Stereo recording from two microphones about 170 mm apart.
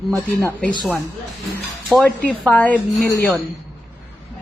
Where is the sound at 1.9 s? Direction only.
5° left (ahead or behind).